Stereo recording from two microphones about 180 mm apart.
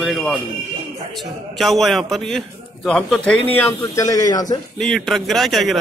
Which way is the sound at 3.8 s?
20° left (ahead or behind).